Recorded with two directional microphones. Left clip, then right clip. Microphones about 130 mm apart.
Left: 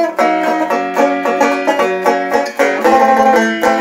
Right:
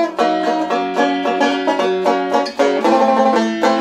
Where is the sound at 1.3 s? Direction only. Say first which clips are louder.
Left 3 dB; 15° right (ahead or behind).